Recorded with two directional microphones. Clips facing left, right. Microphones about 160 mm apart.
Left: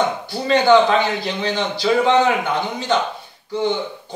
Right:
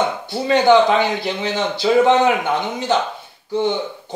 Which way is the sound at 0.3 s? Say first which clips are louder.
Right 1 dB; 20° right (ahead or behind).